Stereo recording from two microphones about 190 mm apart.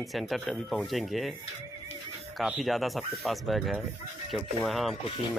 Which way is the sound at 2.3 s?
Centre (ahead or behind).